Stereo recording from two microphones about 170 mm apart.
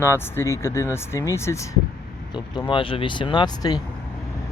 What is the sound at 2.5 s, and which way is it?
Speech, 30° left (ahead or behind).